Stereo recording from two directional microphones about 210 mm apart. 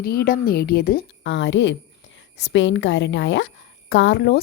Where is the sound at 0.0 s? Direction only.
45° left (ahead or behind).